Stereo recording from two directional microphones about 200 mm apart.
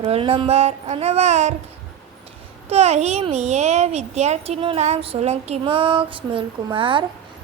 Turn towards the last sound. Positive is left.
turn(degrees=-25)  # may be behind; listen again after turning